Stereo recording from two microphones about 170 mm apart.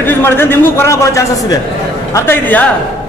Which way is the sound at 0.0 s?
10° left (ahead or behind).